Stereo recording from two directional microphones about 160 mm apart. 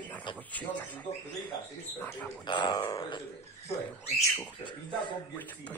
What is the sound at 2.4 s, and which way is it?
Speech, 25° left (ahead or behind).